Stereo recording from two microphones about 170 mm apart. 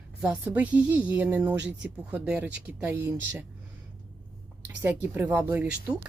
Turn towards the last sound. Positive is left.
turn(degrees=-10)  # may be behind; listen again after turning